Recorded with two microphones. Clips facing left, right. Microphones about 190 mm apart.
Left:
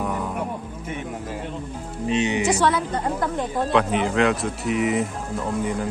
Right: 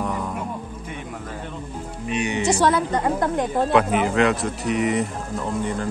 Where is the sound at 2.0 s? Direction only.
25° left (ahead or behind).